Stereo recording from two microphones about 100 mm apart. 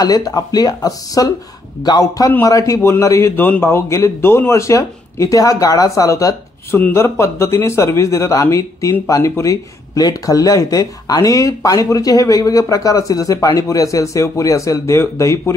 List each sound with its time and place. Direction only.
0.0 s a man's voice: 40° left (ahead or behind)